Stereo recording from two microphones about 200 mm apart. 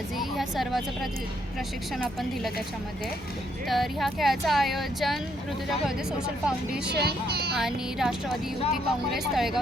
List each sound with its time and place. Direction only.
0.2 s vehicle: centre (ahead or behind)
3.7 s speech: centre (ahead or behind)
6.9 s speech: 55° right (ahead or behind)
7.5 s speech: centre (ahead or behind)